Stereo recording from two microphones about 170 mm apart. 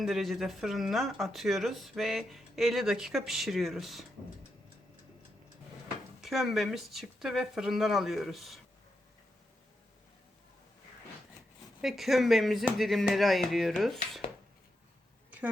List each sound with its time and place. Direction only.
0.0 s speech: centre (ahead or behind)
6.2 s speech: centre (ahead or behind)
11.8 s speech: centre (ahead or behind)